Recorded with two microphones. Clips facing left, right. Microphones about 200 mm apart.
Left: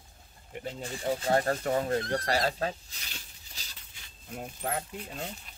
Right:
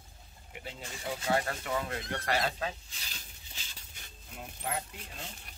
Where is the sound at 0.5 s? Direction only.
40° left (ahead or behind).